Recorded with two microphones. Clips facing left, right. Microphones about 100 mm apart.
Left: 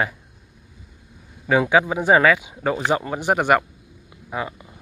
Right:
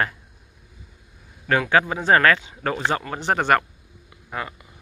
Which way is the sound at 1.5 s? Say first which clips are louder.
Left 2 dB; 15° left (ahead or behind).